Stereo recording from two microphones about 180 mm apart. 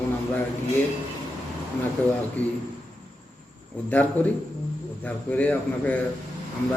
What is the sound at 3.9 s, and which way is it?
A man's voice, 10° left (ahead or behind).